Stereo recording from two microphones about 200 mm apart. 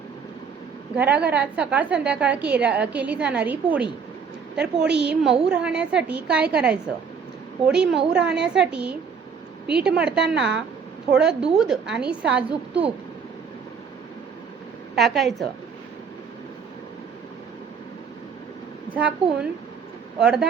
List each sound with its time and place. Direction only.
0.9 s a woman's voice: 10° right (ahead or behind)
4.9 s a woman's voice: 55° right (ahead or behind)
5.2 s a woman's voice: 5° right (ahead or behind)
10.3 s a woman's voice: 60° right (ahead or behind)
11.1 s a woman's voice: 5° right (ahead or behind)
14.9 s a woman's voice: centre (ahead or behind)
18.9 s a woman's voice: 5° right (ahead or behind)